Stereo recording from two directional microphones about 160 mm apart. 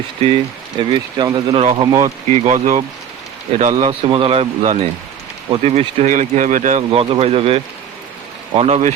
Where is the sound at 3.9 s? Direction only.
35° right (ahead or behind); by 6.8 s 50° right (ahead or behind).